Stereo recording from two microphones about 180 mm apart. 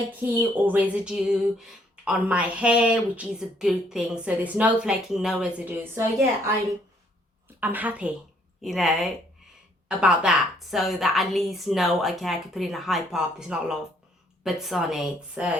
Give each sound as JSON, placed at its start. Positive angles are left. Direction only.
{"t": 0.1, "sound": "speech", "side_deg": -10}
{"t": 7.6, "sound": "a woman's voice", "side_deg": -10}